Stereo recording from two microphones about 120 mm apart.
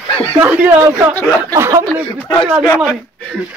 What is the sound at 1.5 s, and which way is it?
Speech, 25° right (ahead or behind).